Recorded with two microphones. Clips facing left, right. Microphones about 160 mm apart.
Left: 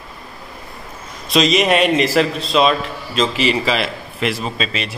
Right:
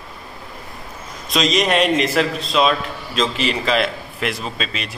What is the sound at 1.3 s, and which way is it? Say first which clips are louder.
Speech: left 3 dB; 5° left (ahead or behind).